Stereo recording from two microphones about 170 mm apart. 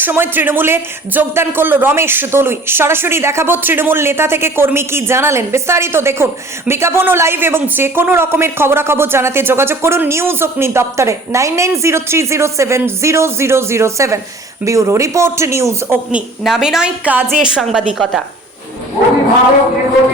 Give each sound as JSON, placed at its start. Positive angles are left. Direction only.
{"t": 0.0, "sound": "speech", "side_deg": -10}
{"t": 16.4, "sound": "a woman's voice", "side_deg": 0}